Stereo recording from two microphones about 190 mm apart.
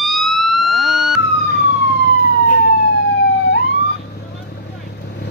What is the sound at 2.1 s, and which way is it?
Emergency vehicle, 55° left (ahead or behind).